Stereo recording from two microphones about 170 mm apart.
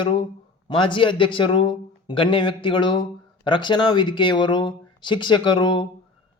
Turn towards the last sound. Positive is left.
turn(degrees=30)  # may be behind; listen again after turning